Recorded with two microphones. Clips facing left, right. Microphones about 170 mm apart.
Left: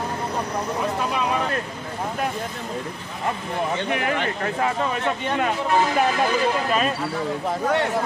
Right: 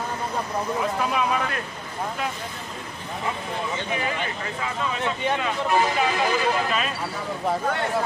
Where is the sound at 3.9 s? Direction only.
65° left (ahead or behind).